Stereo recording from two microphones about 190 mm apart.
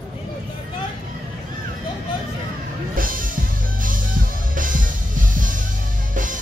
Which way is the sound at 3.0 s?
45° right (ahead or behind).